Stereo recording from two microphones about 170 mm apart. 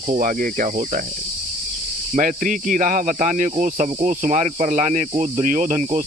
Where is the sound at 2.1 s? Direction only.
50° right (ahead or behind).